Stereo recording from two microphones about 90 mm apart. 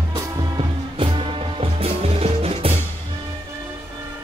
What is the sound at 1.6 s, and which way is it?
Music, 90° right.